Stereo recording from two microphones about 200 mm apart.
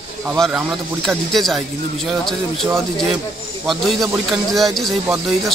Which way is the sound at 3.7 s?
Centre (ahead or behind).